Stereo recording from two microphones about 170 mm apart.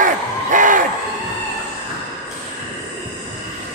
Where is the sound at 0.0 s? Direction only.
50° right (ahead or behind).